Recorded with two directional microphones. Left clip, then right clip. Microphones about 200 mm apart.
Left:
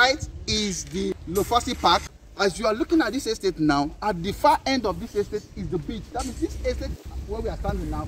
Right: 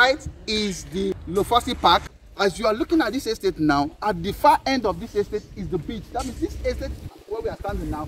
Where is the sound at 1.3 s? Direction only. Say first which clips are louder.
Right 2 dB; centre (ahead or behind).